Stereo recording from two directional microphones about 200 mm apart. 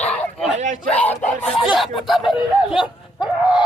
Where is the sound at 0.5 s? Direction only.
40° right (ahead or behind).